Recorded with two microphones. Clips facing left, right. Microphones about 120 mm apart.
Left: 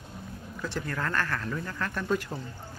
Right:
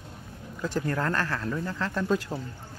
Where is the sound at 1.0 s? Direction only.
25° right (ahead or behind).